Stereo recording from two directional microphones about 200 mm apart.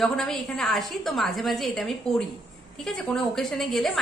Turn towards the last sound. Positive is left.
turn(degrees=0)  # may be behind; listen again after turning